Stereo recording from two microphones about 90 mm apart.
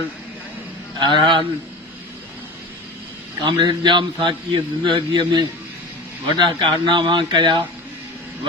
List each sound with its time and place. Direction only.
0.9 s a man's voice: 60° right (ahead or behind)
3.4 s a man's voice: 60° right (ahead or behind)